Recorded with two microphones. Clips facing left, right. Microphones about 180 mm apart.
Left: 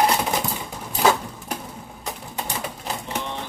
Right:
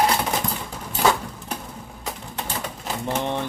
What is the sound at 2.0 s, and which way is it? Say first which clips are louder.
Typewriter: left 1 dB; centre (ahead or behind).